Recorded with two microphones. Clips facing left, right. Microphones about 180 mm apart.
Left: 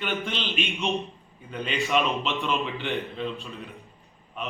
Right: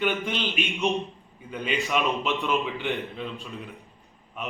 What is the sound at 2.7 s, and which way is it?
Speech, 15° right (ahead or behind).